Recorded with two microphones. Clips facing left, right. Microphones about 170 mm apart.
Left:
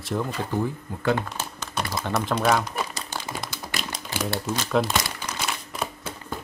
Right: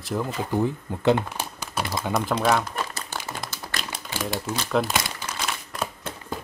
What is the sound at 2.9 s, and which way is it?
Crumpling, 15° left (ahead or behind).